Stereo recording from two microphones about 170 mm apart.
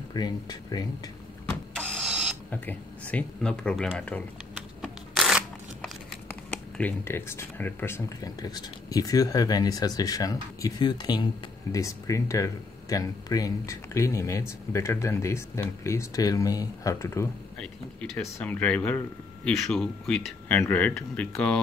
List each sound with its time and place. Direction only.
0.1 s speech: 25° left (ahead or behind)
1.4 s power windows: 5° left (ahead or behind)
2.5 s speech: 10° left (ahead or behind)
4.8 s a sound: centre (ahead or behind)
6.2 s speech: 10° left (ahead or behind)
18.4 s speech: 10° left (ahead or behind)